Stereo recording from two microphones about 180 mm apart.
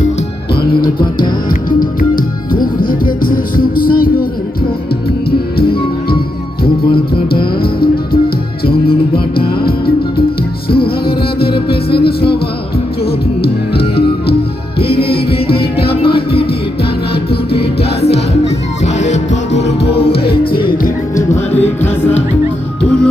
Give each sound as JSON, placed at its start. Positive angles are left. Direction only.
{"t": 1.8, "sound": "music", "side_deg": 50}
{"t": 7.6, "sound": "music", "side_deg": 55}
{"t": 9.7, "sound": "music", "side_deg": 60}
{"t": 17.1, "sound": "music", "side_deg": 65}
{"t": 19.0, "sound": "music", "side_deg": 40}
{"t": 19.8, "sound": "music", "side_deg": 60}
{"t": 21.5, "sound": "music", "side_deg": 10}